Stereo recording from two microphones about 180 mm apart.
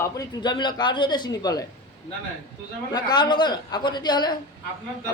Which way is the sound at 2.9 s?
25° left (ahead or behind).